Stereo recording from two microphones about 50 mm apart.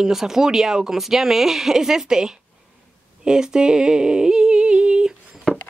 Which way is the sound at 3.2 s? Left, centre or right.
Centre.